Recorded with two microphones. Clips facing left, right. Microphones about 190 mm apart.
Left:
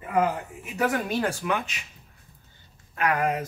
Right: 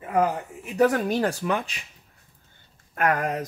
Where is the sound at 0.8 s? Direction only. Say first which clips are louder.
Right 3 dB; 35° right (ahead or behind).